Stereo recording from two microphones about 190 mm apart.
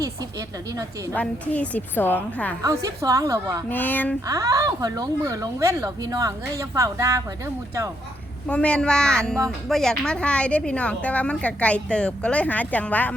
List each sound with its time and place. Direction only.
0.0 s speech: 20° right (ahead or behind)
1.1 s a woman's voice: 5° left (ahead or behind)
2.6 s a woman's voice: 15° right (ahead or behind)
3.7 s a woman's voice: 10° left (ahead or behind)
4.3 s a woman's voice: 15° right (ahead or behind)
8.4 s a woman's voice: 5° left (ahead or behind)